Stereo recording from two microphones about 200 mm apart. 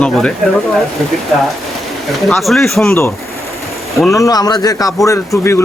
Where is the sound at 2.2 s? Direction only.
Centre (ahead or behind).